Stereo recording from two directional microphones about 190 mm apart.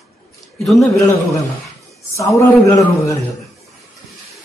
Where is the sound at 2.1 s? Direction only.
15° left (ahead or behind).